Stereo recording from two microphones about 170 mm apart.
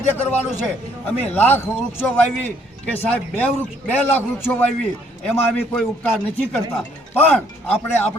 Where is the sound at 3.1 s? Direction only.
10° left (ahead or behind).